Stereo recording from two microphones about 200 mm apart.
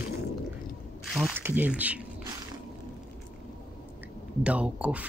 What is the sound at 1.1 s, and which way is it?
Speech, 10° right (ahead or behind).